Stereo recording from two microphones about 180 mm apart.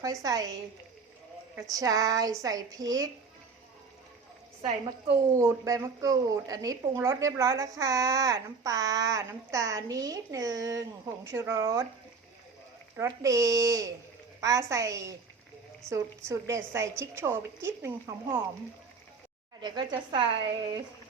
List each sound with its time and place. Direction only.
0.0 s a woman's voice: 20° right (ahead or behind)
1.7 s a woman's voice: 20° right (ahead or behind)
5.3 s a woman's voice: 15° right (ahead or behind)
13.0 s a woman's voice: 15° right (ahead or behind)
19.6 s a woman's voice: 25° right (ahead or behind)